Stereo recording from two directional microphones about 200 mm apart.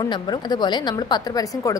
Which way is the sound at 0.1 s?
20° left (ahead or behind).